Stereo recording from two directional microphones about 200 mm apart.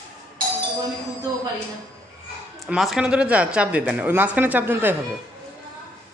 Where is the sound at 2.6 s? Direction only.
Centre (ahead or behind).